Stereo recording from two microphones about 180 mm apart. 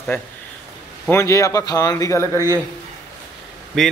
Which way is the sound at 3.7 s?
Centre (ahead or behind).